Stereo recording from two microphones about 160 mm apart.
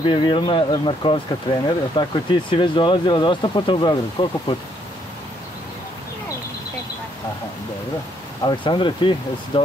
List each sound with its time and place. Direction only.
0.0 s speech: 30° left (ahead or behind)
8.5 s speech: 30° left (ahead or behind)